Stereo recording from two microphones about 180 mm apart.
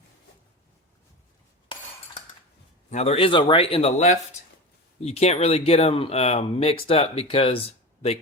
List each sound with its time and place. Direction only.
2.9 s speech: 35° left (ahead or behind)